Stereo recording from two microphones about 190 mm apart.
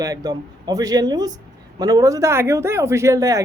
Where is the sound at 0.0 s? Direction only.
20° right (ahead or behind).